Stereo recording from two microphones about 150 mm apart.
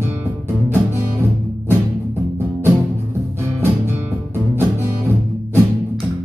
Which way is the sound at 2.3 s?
15° right (ahead or behind).